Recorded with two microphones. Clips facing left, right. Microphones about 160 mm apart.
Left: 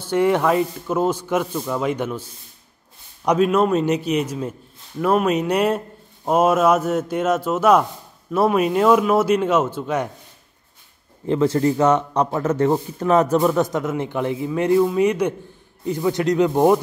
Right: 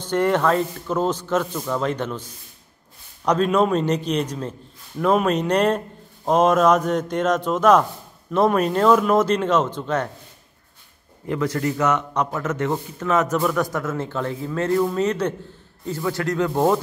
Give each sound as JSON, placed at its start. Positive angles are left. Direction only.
{"t": 0.0, "sound": "speech", "side_deg": 10}
{"t": 3.3, "sound": "speech", "side_deg": 5}
{"t": 11.2, "sound": "speech", "side_deg": 25}
{"t": 13.4, "sound": "speech", "side_deg": 20}